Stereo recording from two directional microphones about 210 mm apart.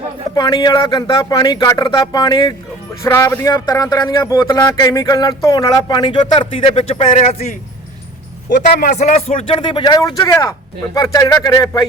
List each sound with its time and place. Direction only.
0.3 s speech: 20° left (ahead or behind)
8.8 s speech: 35° left (ahead or behind); by 11.9 s 15° left (ahead or behind)